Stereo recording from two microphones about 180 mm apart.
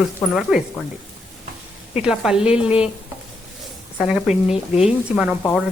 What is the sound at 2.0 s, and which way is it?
Speech, 5° right (ahead or behind).